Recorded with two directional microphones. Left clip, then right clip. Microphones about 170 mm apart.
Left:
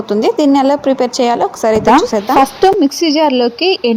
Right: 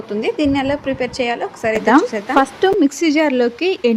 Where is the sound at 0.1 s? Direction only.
25° left (ahead or behind).